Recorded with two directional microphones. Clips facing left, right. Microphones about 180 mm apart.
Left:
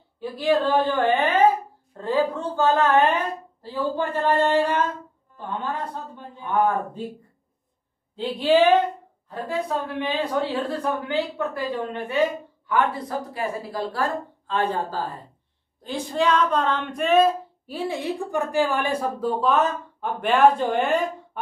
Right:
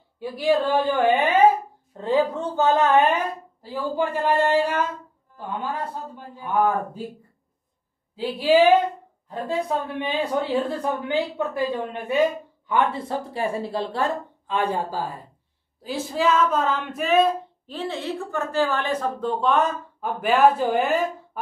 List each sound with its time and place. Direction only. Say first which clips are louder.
0.2 s a woman's voice: even; 15° right (ahead or behind)
8.2 s a woman's voice: right 1 dB; 10° right (ahead or behind); by 14.1 s 25° right (ahead or behind)
14.5 s speech: even; 10° right (ahead or behind)